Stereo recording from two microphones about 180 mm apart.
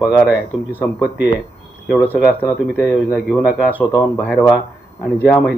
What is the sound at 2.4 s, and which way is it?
Speech, 10° left (ahead or behind).